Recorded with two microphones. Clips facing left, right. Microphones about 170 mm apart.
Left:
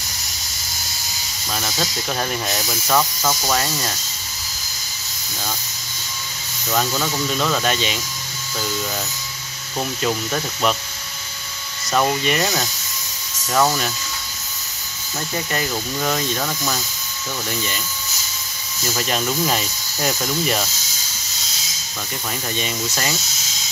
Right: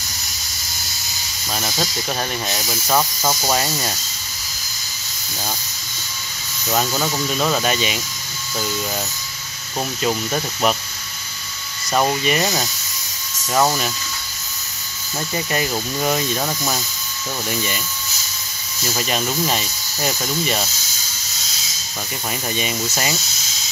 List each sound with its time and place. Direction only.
1.5 s speech: 10° right (ahead or behind)
2.9 s speech: 15° right (ahead or behind)
6.7 s speech: 15° right (ahead or behind)
10.0 s speech: 5° right (ahead or behind)
11.9 s speech: 10° right (ahead or behind)
15.5 s speech: 15° right (ahead or behind)
18.9 s speech: 5° right (ahead or behind)
22.6 s speech: 10° right (ahead or behind)